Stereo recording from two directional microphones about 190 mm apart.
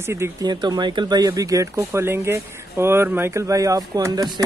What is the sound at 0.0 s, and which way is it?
Speech, 15° right (ahead or behind).